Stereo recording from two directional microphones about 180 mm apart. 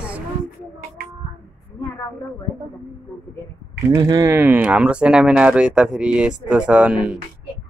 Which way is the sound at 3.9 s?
20° right (ahead or behind).